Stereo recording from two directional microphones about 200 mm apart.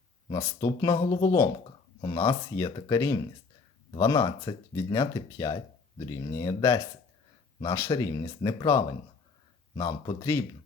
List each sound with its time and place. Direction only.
0.3 s speech: 15° left (ahead or behind)